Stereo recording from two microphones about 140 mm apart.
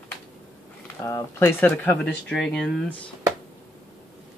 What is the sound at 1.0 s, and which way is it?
Speech, 25° left (ahead or behind).